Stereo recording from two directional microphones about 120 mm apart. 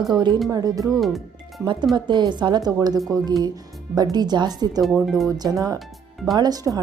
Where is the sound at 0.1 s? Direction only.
40° right (ahead or behind).